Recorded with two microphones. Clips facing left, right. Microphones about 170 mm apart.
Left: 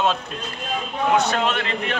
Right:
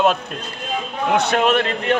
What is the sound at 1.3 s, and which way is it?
Speech, 60° right (ahead or behind).